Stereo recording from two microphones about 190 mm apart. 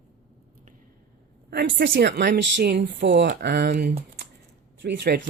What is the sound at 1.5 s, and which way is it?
Speech, 65° right (ahead or behind).